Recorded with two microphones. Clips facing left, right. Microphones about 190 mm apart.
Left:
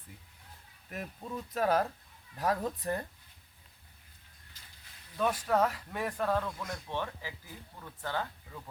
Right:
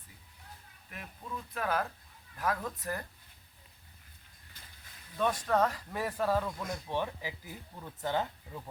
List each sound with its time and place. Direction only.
0.9 s speech: 40° left (ahead or behind)
4.6 s a sound: 55° right (ahead or behind)
5.1 s speech: 5° left (ahead or behind); by 8.7 s 20° right (ahead or behind)